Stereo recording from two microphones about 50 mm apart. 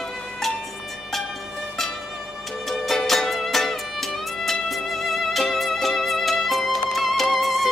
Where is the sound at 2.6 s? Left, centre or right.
Centre.